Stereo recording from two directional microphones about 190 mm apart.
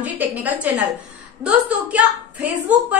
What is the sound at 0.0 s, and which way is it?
A woman's voice, 10° right (ahead or behind).